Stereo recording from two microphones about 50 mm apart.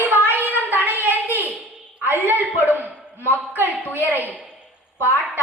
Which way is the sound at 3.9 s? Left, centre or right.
Left.